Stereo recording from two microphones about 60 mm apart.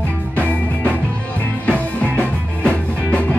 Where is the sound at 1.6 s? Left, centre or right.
Left.